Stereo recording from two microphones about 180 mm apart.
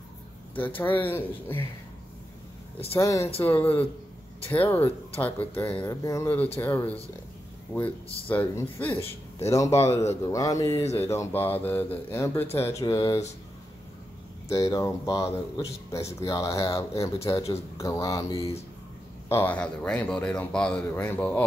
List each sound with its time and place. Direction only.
0.6 s speech: 10° left (ahead or behind)
3.0 s speech: 15° left (ahead or behind)
14.5 s speech: 20° left (ahead or behind)